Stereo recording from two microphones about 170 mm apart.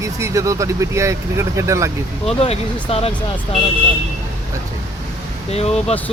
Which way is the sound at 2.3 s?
35° left (ahead or behind).